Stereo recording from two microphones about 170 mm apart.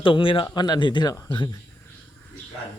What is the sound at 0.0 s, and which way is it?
Speech, 30° left (ahead or behind).